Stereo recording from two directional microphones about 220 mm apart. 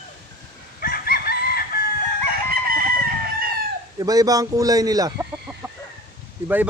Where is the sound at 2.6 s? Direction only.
40° right (ahead or behind).